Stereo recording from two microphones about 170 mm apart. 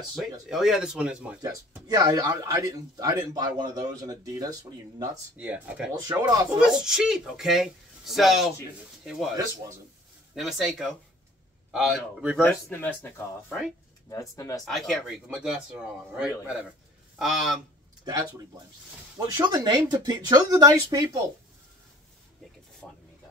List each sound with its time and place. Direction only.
0.1 s speech: centre (ahead or behind)
1.9 s a man's voice: 20° right (ahead or behind)
5.4 s speech: 5° right (ahead or behind)
5.9 s a man's voice: 20° right (ahead or behind)
6.6 s speech: 5° right (ahead or behind)
10.3 s speech: centre (ahead or behind)
12.4 s speech: 5° left (ahead or behind)
14.3 s speech: 20° left (ahead or behind)
14.6 s speech: centre (ahead or behind)
18.0 s a man's voice: 25° right (ahead or behind)
22.8 s a sound: 5° left (ahead or behind)